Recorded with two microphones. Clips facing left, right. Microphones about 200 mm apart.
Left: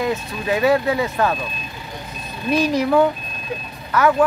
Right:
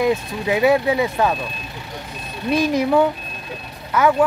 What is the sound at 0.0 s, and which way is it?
Speech, 15° right (ahead or behind).